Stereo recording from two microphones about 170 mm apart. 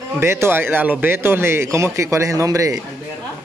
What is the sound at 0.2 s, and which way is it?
A man's voice, 15° right (ahead or behind).